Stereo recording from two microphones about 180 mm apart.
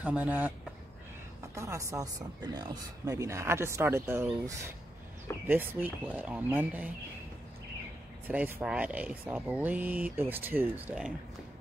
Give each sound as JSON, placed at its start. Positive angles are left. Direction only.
{"t": 0.0, "sound": "speech", "side_deg": -10}
{"t": 1.5, "sound": "speech", "side_deg": -15}
{"t": 8.3, "sound": "speech", "side_deg": -10}